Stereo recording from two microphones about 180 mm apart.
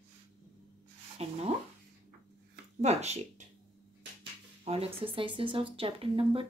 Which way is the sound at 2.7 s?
40° right (ahead or behind).